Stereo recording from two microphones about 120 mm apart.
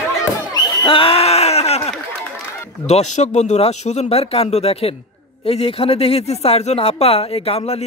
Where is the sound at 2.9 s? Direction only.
70° left (ahead or behind).